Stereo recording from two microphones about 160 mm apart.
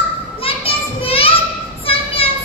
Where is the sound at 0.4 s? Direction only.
35° left (ahead or behind).